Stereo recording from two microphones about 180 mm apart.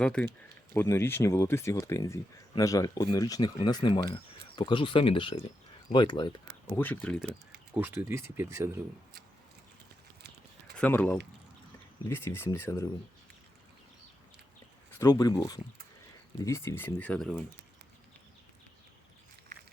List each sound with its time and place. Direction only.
0.0 s speech: 5° left (ahead or behind); by 6.3 s 25° left (ahead or behind)
6.7 s speech: 10° left (ahead or behind)
7.8 s speech: 10° right (ahead or behind)
10.8 s speech: 10° left (ahead or behind)
14.9 s speech: 20° left (ahead or behind)